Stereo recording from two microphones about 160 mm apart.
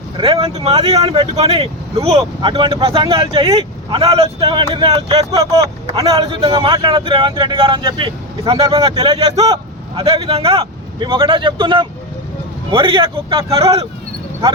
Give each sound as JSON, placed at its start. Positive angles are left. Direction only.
{"t": 0.2, "sound": "a man's voice", "side_deg": -30}